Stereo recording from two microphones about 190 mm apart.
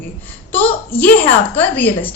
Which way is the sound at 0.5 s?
10° left (ahead or behind).